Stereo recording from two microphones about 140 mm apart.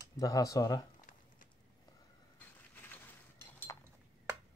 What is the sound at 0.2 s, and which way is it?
Speech, 25° left (ahead or behind).